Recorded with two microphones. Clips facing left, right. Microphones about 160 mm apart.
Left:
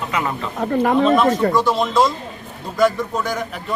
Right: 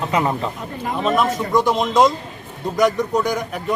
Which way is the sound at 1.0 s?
10° right (ahead or behind).